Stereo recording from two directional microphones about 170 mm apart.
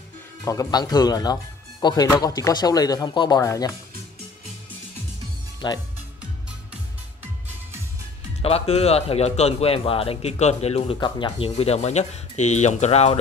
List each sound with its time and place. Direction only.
0.5 s speech: 20° left (ahead or behind)
5.6 s speech: 25° left (ahead or behind)
8.4 s speech: 35° left (ahead or behind)